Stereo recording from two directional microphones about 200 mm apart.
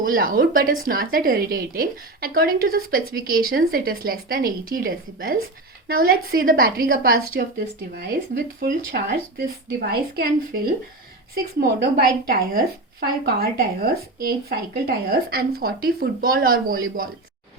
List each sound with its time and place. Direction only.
0.0 s a woman's voice: 45° right (ahead or behind)
8.6 s a woman's voice: 55° right (ahead or behind)
11.6 s a woman's voice: 50° right (ahead or behind)